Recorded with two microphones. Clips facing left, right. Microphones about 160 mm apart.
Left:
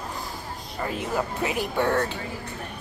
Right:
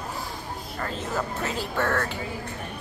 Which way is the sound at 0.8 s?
10° left (ahead or behind).